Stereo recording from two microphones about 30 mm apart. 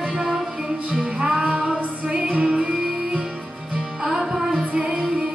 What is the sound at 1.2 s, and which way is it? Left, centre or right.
Music, right.